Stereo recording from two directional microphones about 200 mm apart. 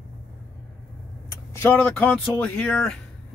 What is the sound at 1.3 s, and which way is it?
Speech, 10° left (ahead or behind).